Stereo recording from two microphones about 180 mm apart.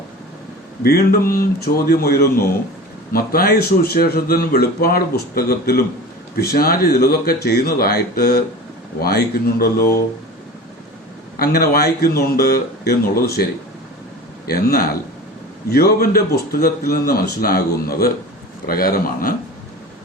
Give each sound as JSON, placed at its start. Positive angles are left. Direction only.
{"t": 0.8, "sound": "speech", "side_deg": 55}
{"t": 11.3, "sound": "speech", "side_deg": 55}